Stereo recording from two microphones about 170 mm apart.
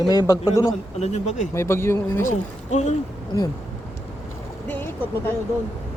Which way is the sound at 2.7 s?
40° left (ahead or behind).